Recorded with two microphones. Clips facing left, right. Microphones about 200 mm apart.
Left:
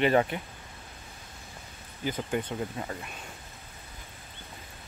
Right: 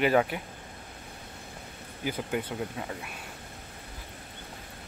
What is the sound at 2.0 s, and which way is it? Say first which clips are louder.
Speech: left 1 dB; 10° right (ahead or behind).